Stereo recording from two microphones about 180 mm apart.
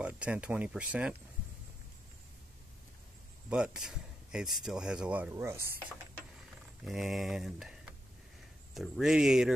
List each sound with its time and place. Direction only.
0.0 s speech: 5° right (ahead or behind)
3.4 s speech: 5° right (ahead or behind)
6.8 s speech: centre (ahead or behind)